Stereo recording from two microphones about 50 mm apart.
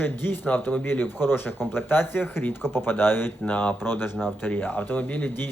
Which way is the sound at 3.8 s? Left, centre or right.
Left.